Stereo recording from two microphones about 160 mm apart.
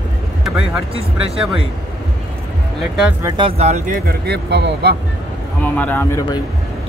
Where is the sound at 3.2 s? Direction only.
30° right (ahead or behind).